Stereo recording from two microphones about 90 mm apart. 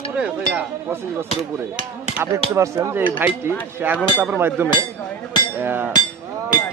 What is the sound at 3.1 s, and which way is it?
Speech, 20° right (ahead or behind).